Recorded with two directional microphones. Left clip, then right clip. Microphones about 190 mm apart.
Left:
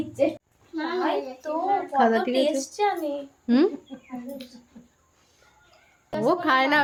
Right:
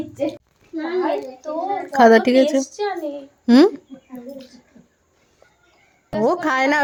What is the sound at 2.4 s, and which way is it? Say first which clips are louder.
Speech: right 4 dB; 10° left (ahead or behind).